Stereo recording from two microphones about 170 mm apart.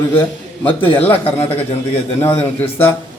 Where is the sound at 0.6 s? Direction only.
10° left (ahead or behind).